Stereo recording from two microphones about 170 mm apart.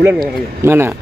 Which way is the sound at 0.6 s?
15° right (ahead or behind).